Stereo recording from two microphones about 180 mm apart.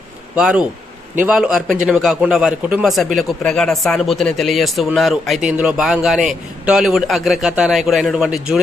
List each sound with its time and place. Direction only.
0.3 s speech: 5° right (ahead or behind)